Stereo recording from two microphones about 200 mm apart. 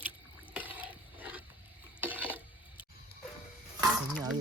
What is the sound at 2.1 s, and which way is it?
Stir, 10° right (ahead or behind).